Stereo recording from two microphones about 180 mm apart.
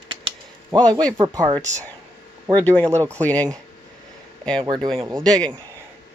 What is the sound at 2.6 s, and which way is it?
Speech, 10° left (ahead or behind).